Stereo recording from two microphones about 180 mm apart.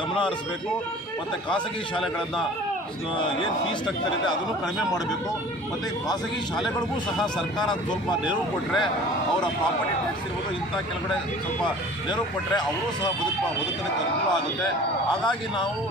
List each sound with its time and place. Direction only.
1.5 s a man's voice: centre (ahead or behind)
3.3 s speech: 25° left (ahead or behind)
8.1 s speech: 25° left (ahead or behind)
11.6 s speech: 25° left (ahead or behind)
15.2 s speech: 25° left (ahead or behind)